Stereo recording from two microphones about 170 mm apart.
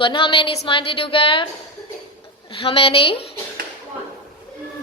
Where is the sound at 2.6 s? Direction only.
35° left (ahead or behind).